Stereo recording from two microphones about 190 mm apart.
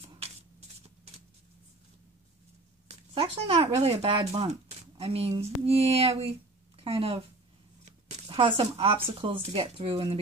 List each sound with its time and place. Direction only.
3.2 s speech: 25° right (ahead or behind)